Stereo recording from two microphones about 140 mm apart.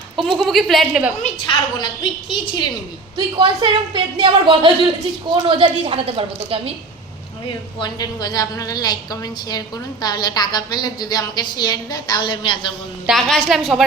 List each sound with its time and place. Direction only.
0.2 s a woman's voice: centre (ahead or behind)
1.5 s a woman's voice: 35° left (ahead or behind)
3.2 s a woman's voice: 35° right (ahead or behind)
7.4 s a woman's voice: 30° left (ahead or behind)
13.1 s a woman's voice: centre (ahead or behind)